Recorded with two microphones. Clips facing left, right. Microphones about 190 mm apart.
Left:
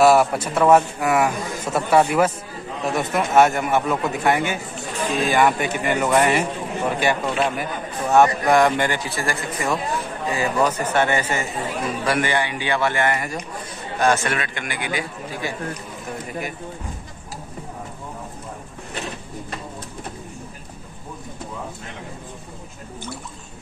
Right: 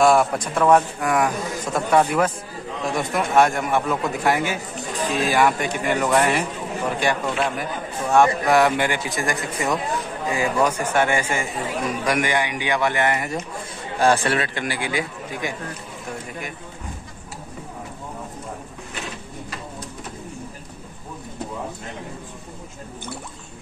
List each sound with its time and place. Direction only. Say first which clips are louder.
0.0 s a man's voice: left 2 dB; 5° left (ahead or behind); by 13.4 s 20° right (ahead or behind)
13.9 s a man's voice: right 1 dB; 30° right (ahead or behind)